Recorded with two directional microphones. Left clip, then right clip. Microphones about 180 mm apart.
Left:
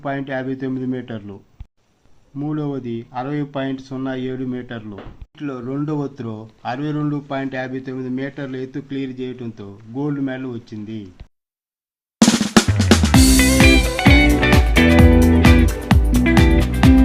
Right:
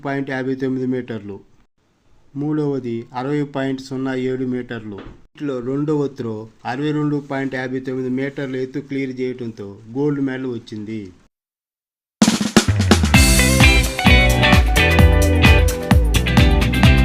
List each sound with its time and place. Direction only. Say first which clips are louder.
0.0 s speech: right 1 dB; 25° right (ahead or behind)
2.4 s speech: right 4 dB; 30° right (ahead or behind)
7.0 s speech: right 2 dB; 25° right (ahead or behind)
12.2 s drum kit: left 1 dB; centre (ahead or behind)
15.4 s music: right 1 dB; centre (ahead or behind)